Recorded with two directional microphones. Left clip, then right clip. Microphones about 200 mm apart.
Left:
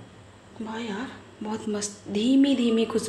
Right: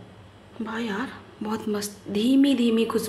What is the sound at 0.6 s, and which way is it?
A woman's voice, 20° right (ahead or behind).